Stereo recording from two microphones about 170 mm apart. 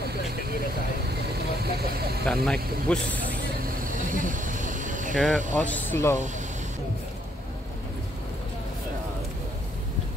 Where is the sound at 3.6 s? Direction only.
55° right (ahead or behind).